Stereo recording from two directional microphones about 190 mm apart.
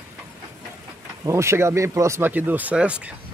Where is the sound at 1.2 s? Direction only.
15° right (ahead or behind).